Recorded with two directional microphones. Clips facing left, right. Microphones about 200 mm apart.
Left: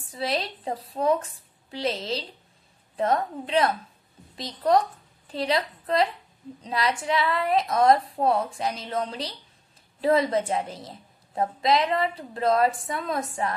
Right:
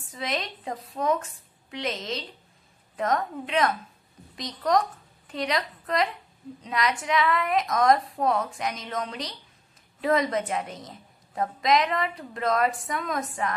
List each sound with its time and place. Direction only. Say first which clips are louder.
0.1 s a woman's voice: left 3 dB; 35° left (ahead or behind)